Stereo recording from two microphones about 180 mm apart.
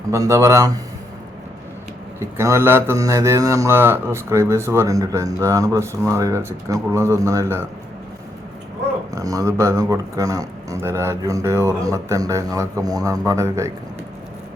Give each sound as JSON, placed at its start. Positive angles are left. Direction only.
{"t": 0.1, "sound": "mantra", "side_deg": -15}
{"t": 2.1, "sound": "mantra", "side_deg": -15}
{"t": 9.1, "sound": "mantra", "side_deg": -20}